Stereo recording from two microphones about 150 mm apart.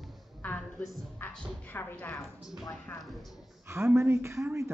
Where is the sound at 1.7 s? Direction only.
15° left (ahead or behind).